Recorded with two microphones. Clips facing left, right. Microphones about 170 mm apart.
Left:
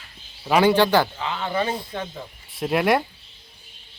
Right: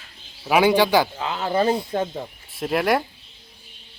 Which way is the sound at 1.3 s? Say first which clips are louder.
Right 4 dB; 40° right (ahead or behind).